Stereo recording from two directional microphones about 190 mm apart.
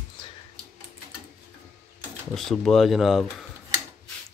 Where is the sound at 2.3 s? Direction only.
Centre (ahead or behind).